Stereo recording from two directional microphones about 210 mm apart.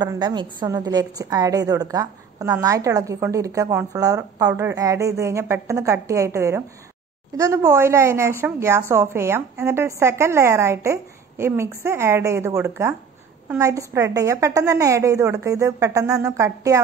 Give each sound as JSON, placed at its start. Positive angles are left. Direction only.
{"t": 0.0, "sound": "a woman's voice", "side_deg": -20}